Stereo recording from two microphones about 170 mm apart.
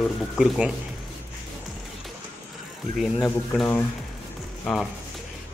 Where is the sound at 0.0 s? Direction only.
Centre (ahead or behind).